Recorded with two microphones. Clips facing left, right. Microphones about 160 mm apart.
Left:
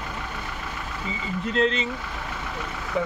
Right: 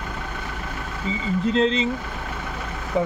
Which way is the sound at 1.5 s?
30° right (ahead or behind).